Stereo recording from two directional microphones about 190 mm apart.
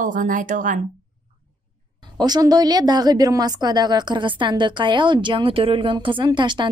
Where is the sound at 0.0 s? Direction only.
45° right (ahead or behind).